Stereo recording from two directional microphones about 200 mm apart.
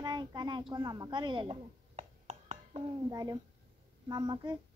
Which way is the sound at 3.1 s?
20° right (ahead or behind).